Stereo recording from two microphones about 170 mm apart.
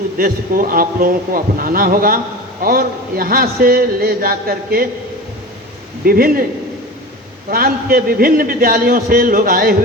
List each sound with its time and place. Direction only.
0.2 s a man's voice: 55° right (ahead or behind)
6.1 s a man's voice: 60° right (ahead or behind)
7.5 s a man's voice: 60° right (ahead or behind)